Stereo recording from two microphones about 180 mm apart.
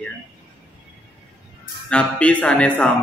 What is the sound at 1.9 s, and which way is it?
Speech, 5° left (ahead or behind).